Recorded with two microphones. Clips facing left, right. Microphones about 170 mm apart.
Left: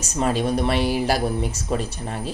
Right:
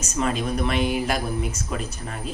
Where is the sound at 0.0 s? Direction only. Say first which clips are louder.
Left 3 dB; 35° left (ahead or behind).